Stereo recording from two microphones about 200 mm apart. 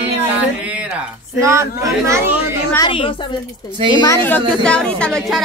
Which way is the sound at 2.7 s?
25° left (ahead or behind).